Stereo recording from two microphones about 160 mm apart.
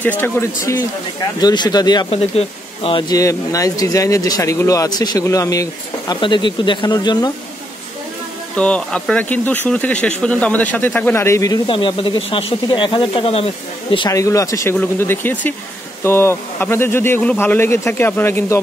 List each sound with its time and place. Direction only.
0.0 s speech: 10° left (ahead or behind)
1.4 s speech: 25° left (ahead or behind)
8.5 s speech: 5° left (ahead or behind); by 13.5 s 35° left (ahead or behind)
13.9 s speech: 20° left (ahead or behind)